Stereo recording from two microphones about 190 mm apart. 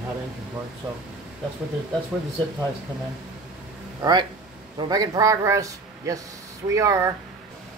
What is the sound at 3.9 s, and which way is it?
A man's voice, 20° right (ahead or behind).